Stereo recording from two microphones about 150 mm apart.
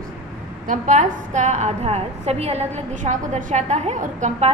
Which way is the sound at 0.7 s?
55° right (ahead or behind).